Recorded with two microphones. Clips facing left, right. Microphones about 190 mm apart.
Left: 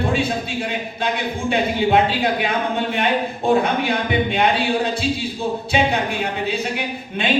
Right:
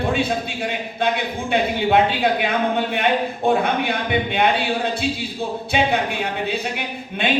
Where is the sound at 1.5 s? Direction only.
55° right (ahead or behind).